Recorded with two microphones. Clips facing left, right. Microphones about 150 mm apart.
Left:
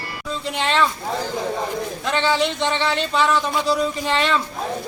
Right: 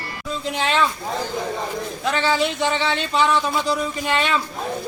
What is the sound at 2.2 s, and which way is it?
Speech, 5° right (ahead or behind).